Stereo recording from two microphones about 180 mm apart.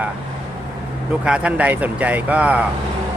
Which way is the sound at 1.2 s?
5° right (ahead or behind).